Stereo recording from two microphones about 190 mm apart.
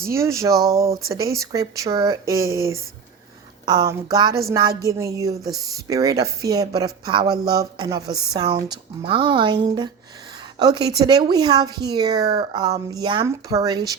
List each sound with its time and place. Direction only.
0.1 s speech: 15° right (ahead or behind)
10.6 s speech: 20° right (ahead or behind)